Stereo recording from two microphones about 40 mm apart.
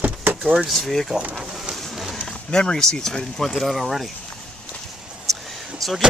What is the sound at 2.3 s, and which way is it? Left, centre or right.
Speech, centre.